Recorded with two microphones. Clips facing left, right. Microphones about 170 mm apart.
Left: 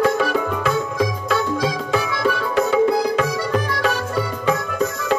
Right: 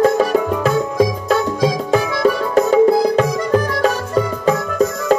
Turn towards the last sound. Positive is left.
turn(degrees=-40)  # may be behind; listen again after turning